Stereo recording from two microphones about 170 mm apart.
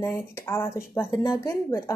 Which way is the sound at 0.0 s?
15° left (ahead or behind).